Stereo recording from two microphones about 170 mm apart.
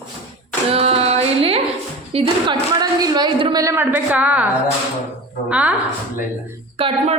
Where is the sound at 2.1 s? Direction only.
30° right (ahead or behind); by 5.7 s 5° right (ahead or behind).